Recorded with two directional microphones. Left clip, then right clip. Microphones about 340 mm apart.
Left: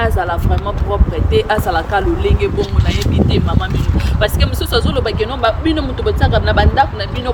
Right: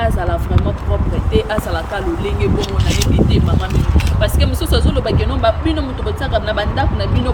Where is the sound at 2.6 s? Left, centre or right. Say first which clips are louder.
Left 1 dB; right.